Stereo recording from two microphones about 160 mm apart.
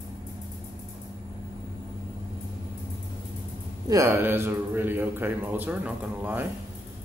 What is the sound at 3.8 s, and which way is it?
A man's voice, 20° right (ahead or behind).